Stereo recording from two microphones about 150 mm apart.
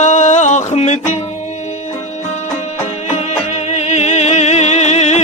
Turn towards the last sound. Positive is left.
turn(degrees=50)  # may be behind; listen again after turning